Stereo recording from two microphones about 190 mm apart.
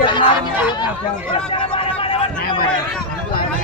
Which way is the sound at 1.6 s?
30° left (ahead or behind).